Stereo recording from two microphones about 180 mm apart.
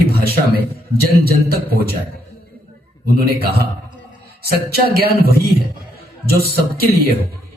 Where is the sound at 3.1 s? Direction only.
60° right (ahead or behind).